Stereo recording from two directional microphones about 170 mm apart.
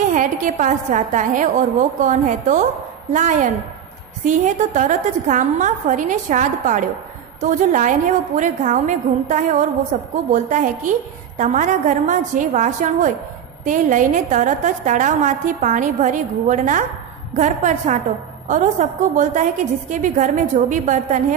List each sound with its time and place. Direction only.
0.1 s a woman's voice: 50° right (ahead or behind)